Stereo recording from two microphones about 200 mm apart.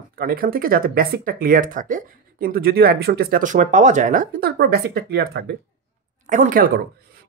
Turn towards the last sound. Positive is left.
turn(degrees=-45)  # may be behind; listen again after turning